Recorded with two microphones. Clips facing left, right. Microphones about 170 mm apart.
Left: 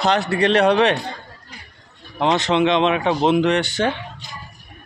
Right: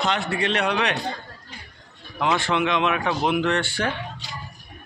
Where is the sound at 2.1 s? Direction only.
25° left (ahead or behind).